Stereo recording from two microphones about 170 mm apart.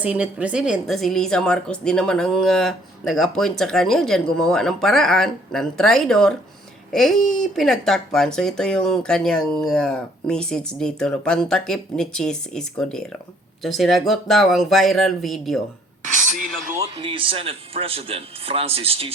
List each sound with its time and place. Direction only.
0.0 s a woman's voice: 10° right (ahead or behind)
16.9 s a man's voice: 30° right (ahead or behind)